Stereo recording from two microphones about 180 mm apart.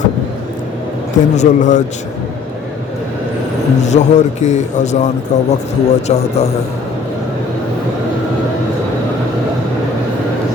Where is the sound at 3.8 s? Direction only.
40° left (ahead or behind).